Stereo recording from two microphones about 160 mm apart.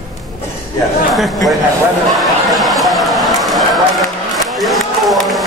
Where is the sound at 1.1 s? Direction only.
Centre (ahead or behind).